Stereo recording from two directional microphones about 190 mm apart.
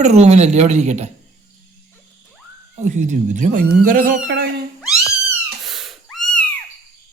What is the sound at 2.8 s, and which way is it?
Speech, 40° right (ahead or behind).